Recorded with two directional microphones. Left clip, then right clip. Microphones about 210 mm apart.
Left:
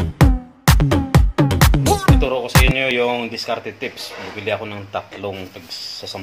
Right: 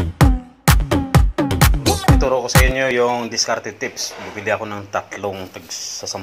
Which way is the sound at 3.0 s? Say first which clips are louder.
Right 2 dB; 15° right (ahead or behind).